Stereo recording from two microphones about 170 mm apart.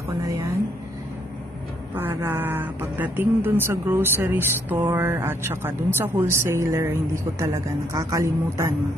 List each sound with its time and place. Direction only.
2.0 s speech: 10° right (ahead or behind)